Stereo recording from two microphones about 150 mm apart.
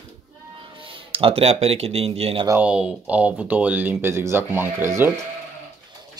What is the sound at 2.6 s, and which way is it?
Speech, 5° right (ahead or behind).